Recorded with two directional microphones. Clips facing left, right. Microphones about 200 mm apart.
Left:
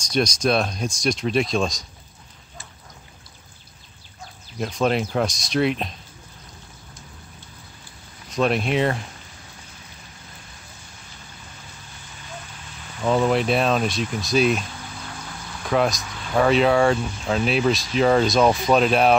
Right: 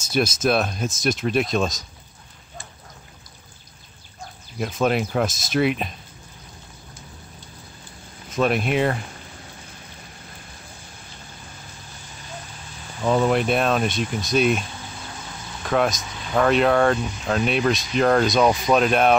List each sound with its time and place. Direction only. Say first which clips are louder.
0.1 s speech: even; 5° right (ahead or behind)
4.6 s speech: even; 5° right (ahead or behind)
8.3 s speech: even; centre (ahead or behind)
13.0 s speech: even; centre (ahead or behind)
15.6 s speech: even; centre (ahead or behind)